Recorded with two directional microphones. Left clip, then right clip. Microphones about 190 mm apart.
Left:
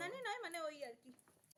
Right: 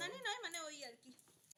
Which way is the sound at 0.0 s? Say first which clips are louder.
Right 1 dB; 30° left (ahead or behind).